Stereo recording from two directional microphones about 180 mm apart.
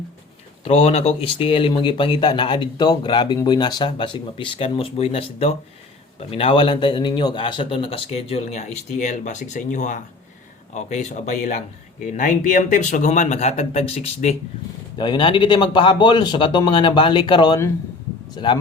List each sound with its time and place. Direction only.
0.6 s a man's voice: 35° left (ahead or behind)
14.9 s speech: 25° left (ahead or behind)